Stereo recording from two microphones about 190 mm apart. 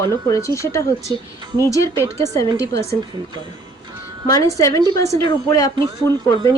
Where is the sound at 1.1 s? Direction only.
20° right (ahead or behind).